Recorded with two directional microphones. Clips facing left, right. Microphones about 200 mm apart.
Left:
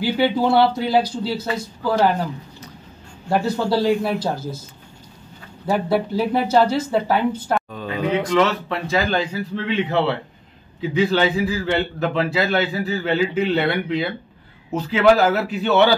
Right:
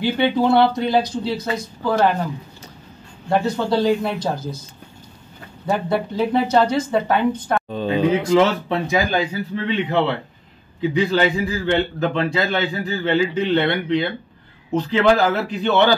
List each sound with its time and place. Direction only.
0.2 s a man's voice: 5° left (ahead or behind)
3.3 s a man's voice: 5° left (ahead or behind)
5.7 s a man's voice: 5° left (ahead or behind)
7.7 s speech: 25° right (ahead or behind)
8.9 s a man's voice: 10° right (ahead or behind)